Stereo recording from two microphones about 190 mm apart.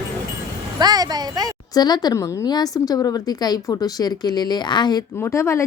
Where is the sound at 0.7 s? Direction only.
20° right (ahead or behind).